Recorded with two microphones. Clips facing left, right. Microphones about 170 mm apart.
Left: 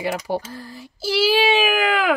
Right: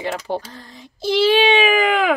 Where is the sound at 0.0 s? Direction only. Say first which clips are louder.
Even; 10° left (ahead or behind).